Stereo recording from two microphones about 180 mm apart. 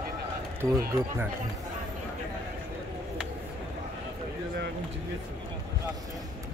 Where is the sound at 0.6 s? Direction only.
15° right (ahead or behind).